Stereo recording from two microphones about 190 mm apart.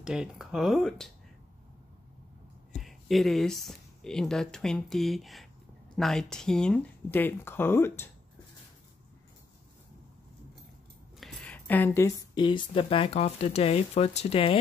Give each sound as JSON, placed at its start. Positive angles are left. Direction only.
{"t": 0.0, "sound": "speech", "side_deg": -5}
{"t": 2.7, "sound": "speech", "side_deg": 0}
{"t": 11.1, "sound": "speech", "side_deg": 5}